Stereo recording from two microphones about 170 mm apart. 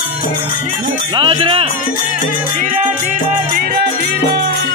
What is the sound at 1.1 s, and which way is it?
Music, 30° right (ahead or behind).